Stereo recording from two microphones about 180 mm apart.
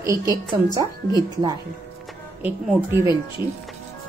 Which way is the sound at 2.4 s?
10° right (ahead or behind).